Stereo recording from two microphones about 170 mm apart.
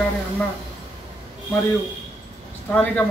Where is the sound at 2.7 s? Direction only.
10° left (ahead or behind).